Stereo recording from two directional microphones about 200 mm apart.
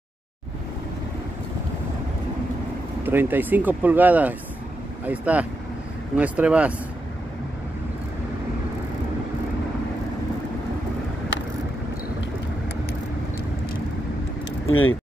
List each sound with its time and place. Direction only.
3.0 s speech: 10° right (ahead or behind)
11.3 s vehicle: 65° left (ahead or behind)
14.7 s speech: 90° left